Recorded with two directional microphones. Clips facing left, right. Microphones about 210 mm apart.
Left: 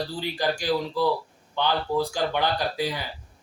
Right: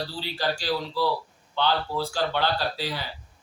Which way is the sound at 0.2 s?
15° left (ahead or behind).